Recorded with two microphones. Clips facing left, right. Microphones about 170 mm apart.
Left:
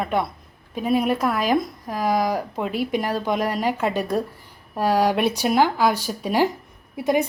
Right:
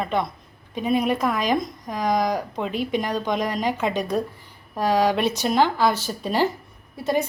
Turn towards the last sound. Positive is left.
turn(degrees=15)  # may be behind; listen again after turning